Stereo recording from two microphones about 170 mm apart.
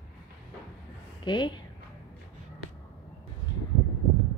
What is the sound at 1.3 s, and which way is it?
Speech, 25° left (ahead or behind).